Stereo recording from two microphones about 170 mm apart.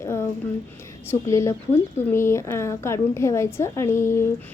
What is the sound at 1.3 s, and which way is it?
A woman's voice, 15° left (ahead or behind).